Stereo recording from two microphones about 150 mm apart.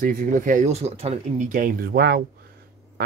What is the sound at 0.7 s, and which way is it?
Speech, 45° right (ahead or behind).